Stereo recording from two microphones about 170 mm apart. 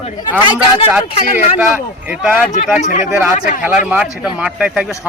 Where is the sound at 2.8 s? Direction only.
45° left (ahead or behind).